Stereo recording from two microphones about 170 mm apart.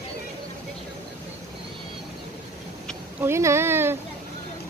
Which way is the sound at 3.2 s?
15° right (ahead or behind).